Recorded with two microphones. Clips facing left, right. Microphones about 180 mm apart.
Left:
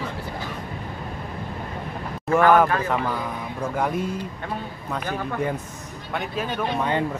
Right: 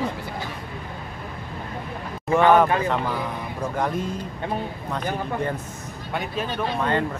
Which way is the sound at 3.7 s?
5° left (ahead or behind).